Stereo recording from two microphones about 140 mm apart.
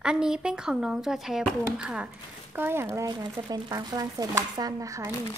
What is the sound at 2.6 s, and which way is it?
Speech, 15° right (ahead or behind).